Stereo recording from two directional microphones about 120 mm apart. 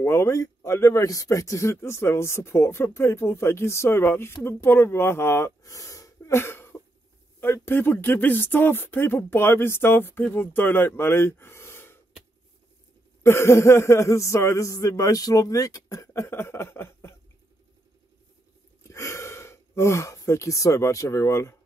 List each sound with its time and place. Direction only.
0.0 s speech: 25° left (ahead or behind)
13.2 s speech: 20° left (ahead or behind)
18.8 s speech: 25° left (ahead or behind)